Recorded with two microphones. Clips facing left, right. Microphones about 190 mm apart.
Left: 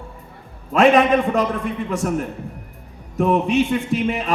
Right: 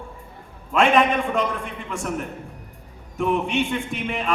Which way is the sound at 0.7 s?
40° left (ahead or behind).